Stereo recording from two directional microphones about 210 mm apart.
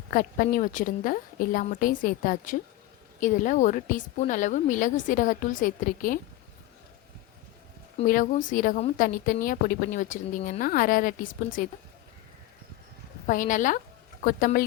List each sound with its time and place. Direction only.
0.1 s a woman's voice: 40° left (ahead or behind)
8.0 s a woman's voice: 40° left (ahead or behind)
13.2 s a woman's voice: 40° left (ahead or behind)